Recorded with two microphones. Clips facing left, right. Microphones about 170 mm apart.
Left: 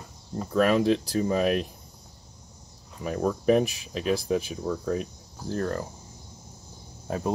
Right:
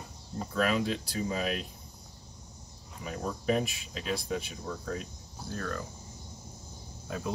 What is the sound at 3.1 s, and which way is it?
Speech, 60° left (ahead or behind).